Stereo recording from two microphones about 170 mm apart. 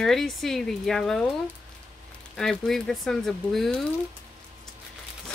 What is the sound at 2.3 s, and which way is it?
Speech, 5° left (ahead or behind).